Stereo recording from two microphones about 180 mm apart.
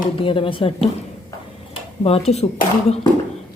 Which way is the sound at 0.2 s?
30° left (ahead or behind).